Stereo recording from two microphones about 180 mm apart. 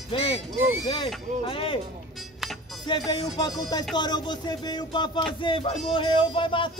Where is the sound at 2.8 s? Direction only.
20° left (ahead or behind).